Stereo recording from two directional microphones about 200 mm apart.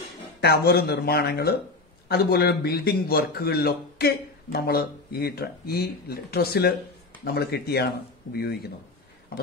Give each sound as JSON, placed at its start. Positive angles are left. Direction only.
{"t": 0.4, "sound": "a man's voice", "side_deg": 50}